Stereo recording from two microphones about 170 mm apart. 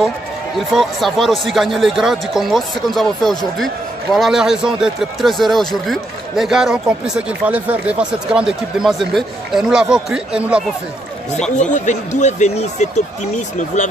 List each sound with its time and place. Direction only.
0.7 s speech: centre (ahead or behind)
11.5 s speech: 45° left (ahead or behind)